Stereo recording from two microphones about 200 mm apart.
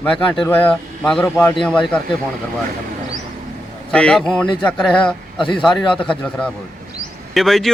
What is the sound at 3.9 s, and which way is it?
A man's voice, 5° left (ahead or behind).